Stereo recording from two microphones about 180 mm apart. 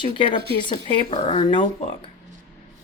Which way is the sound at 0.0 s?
25° left (ahead or behind).